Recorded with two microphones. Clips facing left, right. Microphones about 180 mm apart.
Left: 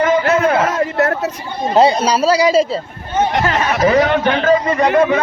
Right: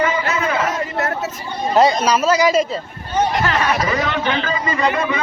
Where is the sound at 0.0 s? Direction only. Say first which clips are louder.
Left 6 dB; 50° left (ahead or behind).